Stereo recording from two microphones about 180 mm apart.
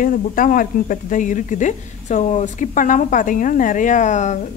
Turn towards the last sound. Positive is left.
turn(degrees=40)  # may be behind; listen again after turning